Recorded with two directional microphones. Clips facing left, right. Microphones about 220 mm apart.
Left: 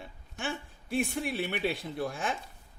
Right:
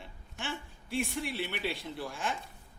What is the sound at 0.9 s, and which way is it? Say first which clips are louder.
Speech: left 3 dB; 50° left (ahead or behind).